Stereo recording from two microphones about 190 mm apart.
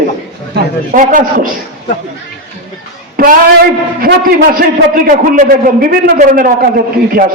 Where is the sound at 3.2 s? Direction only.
50° right (ahead or behind).